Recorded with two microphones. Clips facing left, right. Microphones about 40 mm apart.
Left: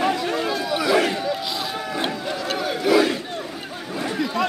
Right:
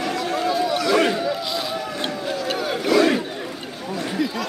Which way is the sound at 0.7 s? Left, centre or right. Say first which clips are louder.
Left 2 dB; centre.